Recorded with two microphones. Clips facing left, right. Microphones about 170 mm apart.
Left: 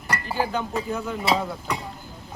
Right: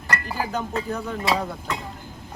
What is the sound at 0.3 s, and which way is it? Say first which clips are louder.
Speech: left 3 dB; centre (ahead or behind).